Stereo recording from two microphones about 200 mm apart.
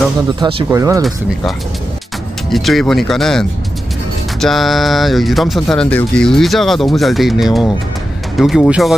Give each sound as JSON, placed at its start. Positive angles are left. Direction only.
{"t": 0.4, "sound": "speech", "side_deg": -25}
{"t": 0.7, "sound": "speech", "side_deg": -15}
{"t": 2.5, "sound": "speech", "side_deg": 0}